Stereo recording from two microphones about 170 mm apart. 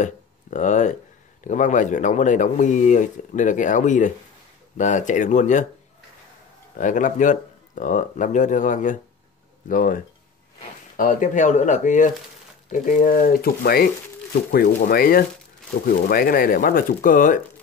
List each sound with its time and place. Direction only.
0.0 s a sound: 45° left (ahead or behind)
1.4 s speech: 45° left (ahead or behind)
6.8 s speech: 50° left (ahead or behind)